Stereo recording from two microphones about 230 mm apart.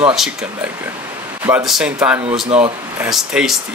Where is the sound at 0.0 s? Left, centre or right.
Centre.